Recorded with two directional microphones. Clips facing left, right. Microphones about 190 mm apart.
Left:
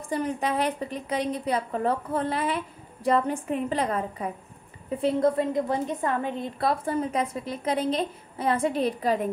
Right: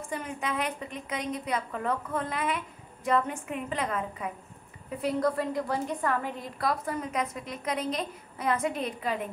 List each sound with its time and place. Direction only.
0.1 s a woman's voice: 35° left (ahead or behind)
4.9 s a woman's voice: 25° left (ahead or behind)